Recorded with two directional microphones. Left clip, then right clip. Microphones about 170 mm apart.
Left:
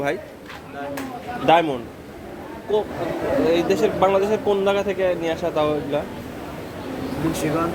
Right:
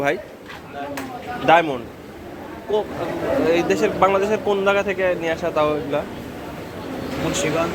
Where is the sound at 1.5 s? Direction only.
25° left (ahead or behind).